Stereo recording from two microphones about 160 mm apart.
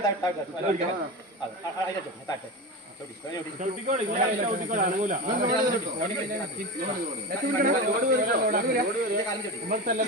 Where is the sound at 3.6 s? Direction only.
50° right (ahead or behind).